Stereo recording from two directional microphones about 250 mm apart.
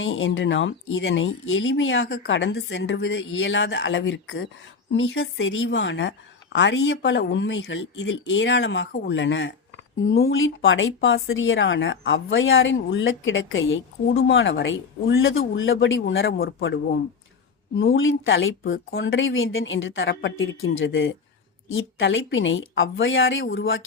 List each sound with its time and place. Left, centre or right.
0.0 s speech: left
17.7 s speech: left